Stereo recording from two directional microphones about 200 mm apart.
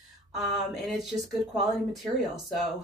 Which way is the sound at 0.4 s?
Centre (ahead or behind).